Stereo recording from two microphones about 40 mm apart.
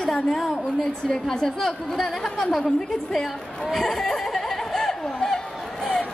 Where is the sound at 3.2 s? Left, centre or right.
Centre.